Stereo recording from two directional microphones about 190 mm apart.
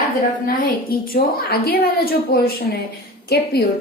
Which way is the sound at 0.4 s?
50° left (ahead or behind).